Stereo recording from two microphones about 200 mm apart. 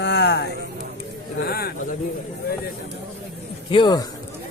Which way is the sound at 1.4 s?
50° left (ahead or behind).